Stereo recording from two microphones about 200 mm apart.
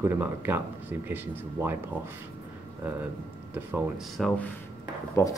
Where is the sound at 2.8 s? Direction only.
10° right (ahead or behind).